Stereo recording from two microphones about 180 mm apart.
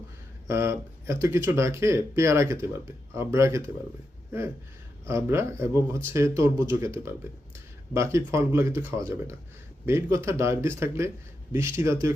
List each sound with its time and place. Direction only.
0.4 s speech: 15° right (ahead or behind)
4.3 s a sound: 15° right (ahead or behind)
5.0 s speech: 15° right (ahead or behind)